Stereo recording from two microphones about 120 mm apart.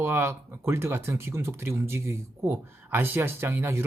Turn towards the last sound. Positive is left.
turn(degrees=-20)  # may be behind; listen again after turning